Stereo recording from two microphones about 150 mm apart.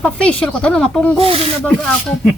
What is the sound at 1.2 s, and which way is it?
Speech, 40° right (ahead or behind).